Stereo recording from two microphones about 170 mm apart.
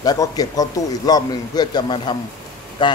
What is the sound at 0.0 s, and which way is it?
A man's voice, 20° left (ahead or behind).